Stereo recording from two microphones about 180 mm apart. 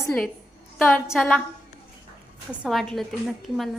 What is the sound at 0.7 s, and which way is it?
Speech, 10° left (ahead or behind).